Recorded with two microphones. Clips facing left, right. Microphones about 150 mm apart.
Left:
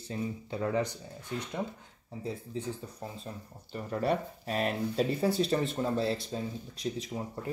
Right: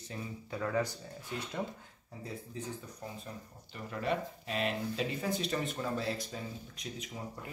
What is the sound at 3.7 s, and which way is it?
Speech, 40° left (ahead or behind).